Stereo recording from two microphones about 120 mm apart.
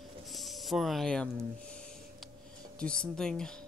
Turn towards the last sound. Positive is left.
turn(degrees=5)  # may be behind; listen again after turning